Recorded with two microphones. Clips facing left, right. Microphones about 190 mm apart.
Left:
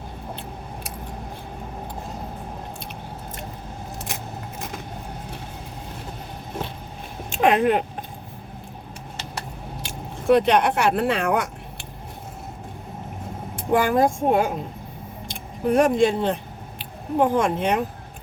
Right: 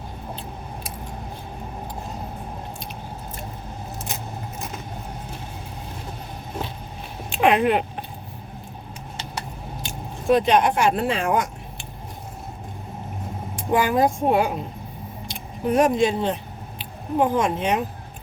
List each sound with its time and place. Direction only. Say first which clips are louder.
7.3 s a sound: even; 45° left (ahead or behind)
9.8 s keys jangling: left 2 dB; 65° left (ahead or behind)
13.6 s speech: left 1 dB; 55° left (ahead or behind)